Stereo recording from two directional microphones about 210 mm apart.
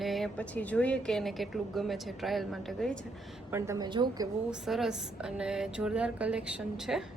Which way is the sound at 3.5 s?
15° right (ahead or behind).